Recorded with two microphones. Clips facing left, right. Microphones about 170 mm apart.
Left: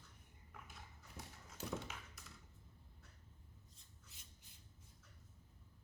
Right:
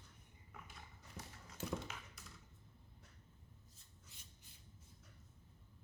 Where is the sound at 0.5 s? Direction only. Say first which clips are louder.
Right 1 dB; centre (ahead or behind).